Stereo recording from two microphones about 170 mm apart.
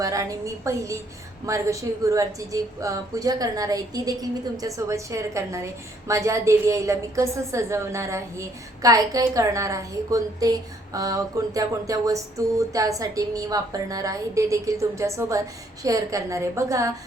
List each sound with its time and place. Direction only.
0.0 s a woman's voice: 20° right (ahead or behind)